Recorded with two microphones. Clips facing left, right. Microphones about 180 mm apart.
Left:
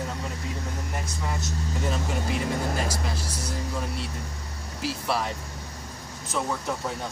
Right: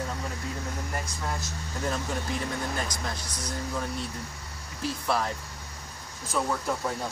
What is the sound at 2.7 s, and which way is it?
Speech, 30° left (ahead or behind).